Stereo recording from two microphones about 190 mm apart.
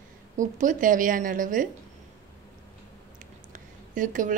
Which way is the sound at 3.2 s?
45° right (ahead or behind).